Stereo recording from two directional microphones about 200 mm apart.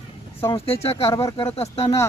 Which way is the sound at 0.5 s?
30° left (ahead or behind).